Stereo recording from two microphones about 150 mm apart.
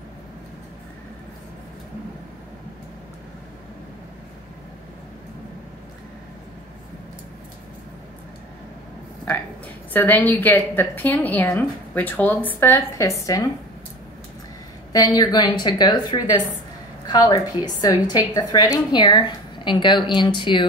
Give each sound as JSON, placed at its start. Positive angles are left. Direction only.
{"t": 9.9, "sound": "a woman's voice", "side_deg": 10}
{"t": 14.9, "sound": "a woman's voice", "side_deg": 25}